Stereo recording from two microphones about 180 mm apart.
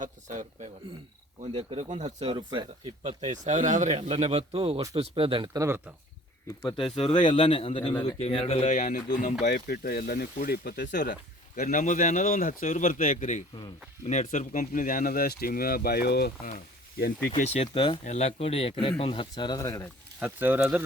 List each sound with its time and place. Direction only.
0.0 s speech: 40° right (ahead or behind)
2.3 s speech: 25° right (ahead or behind)
3.0 s speech: 40° right (ahead or behind)
5.5 s speech: 15° right (ahead or behind)
6.6 s speech: 30° left (ahead or behind)
9.5 s speech: 55° left (ahead or behind)
17.2 s speech: 40° left (ahead or behind); by 19.9 s 15° left (ahead or behind)
20.1 s speech: 10° right (ahead or behind)